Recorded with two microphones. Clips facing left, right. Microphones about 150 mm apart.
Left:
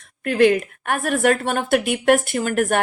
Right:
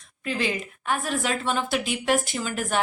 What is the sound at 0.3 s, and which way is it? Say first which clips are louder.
Speech: left 12 dB; 60° left (ahead or behind).